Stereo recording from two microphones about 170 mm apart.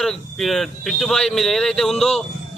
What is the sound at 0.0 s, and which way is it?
Speech, centre (ahead or behind).